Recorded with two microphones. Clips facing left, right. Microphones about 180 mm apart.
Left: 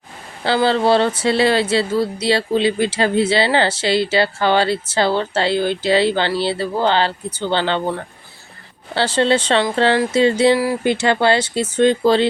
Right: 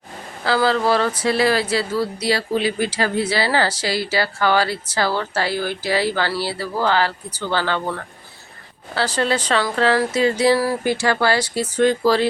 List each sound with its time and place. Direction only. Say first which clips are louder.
0.4 s speech: left 2 dB; 25° left (ahead or behind)